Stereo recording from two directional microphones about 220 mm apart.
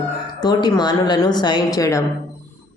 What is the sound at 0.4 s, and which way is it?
Speech, 20° left (ahead or behind).